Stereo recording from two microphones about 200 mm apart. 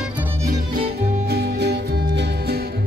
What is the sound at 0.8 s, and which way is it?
Music, 50° right (ahead or behind).